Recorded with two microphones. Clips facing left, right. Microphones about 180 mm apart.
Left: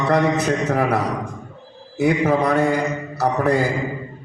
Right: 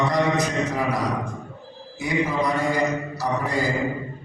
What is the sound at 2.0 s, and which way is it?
Mantra, 60° left (ahead or behind).